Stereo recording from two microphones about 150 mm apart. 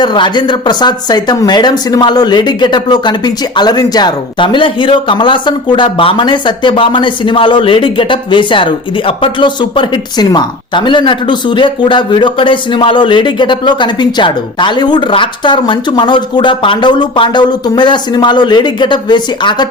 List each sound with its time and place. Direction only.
0.0 s speech: 30° left (ahead or behind)